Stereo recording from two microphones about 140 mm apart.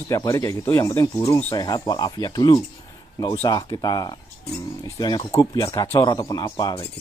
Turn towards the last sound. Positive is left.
turn(degrees=30)  # may be behind; listen again after turning